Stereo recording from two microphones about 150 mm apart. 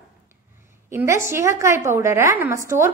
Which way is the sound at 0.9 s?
15° right (ahead or behind).